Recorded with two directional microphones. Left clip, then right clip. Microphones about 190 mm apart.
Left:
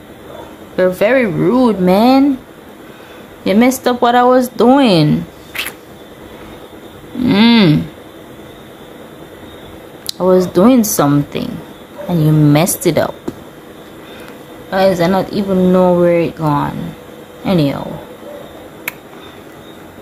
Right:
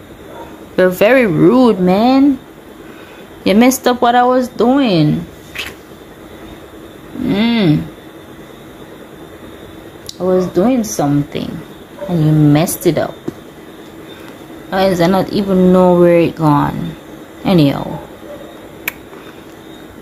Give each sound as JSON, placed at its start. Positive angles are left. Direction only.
{"t": 0.7, "sound": "speech", "side_deg": -10}
{"t": 1.9, "sound": "speech", "side_deg": 5}
{"t": 3.4, "sound": "speech", "side_deg": -5}
{"t": 7.2, "sound": "a sound", "side_deg": 20}
{"t": 10.0, "sound": "speech", "side_deg": 20}
{"t": 11.3, "sound": "speech", "side_deg": 5}
{"t": 14.7, "sound": "speech", "side_deg": 0}
{"t": 18.9, "sound": "a sound", "side_deg": 0}